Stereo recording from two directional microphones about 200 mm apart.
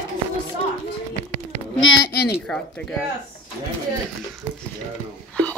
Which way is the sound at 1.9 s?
55° left (ahead or behind).